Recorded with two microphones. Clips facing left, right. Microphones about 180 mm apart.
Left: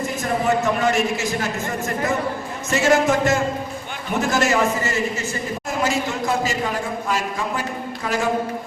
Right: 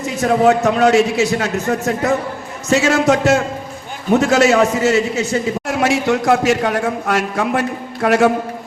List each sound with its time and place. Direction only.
0.0 s a man's voice: 80° right